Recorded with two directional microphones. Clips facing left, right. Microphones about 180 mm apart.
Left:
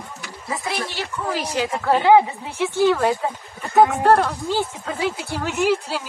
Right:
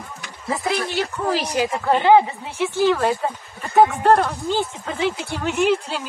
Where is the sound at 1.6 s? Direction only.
Centre (ahead or behind).